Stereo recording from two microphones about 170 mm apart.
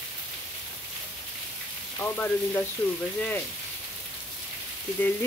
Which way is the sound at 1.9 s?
10° left (ahead or behind).